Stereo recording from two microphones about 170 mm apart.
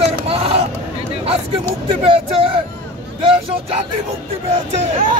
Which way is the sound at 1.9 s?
35° right (ahead or behind).